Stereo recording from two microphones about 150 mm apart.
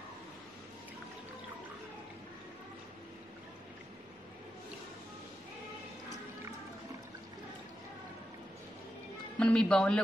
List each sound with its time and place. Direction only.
9.4 s a man's voice: 5° left (ahead or behind)